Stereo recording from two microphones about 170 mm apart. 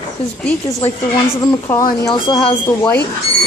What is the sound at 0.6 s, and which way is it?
Speech, 20° left (ahead or behind).